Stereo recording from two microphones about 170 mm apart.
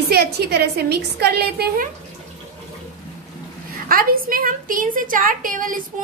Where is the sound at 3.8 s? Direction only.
55° right (ahead or behind).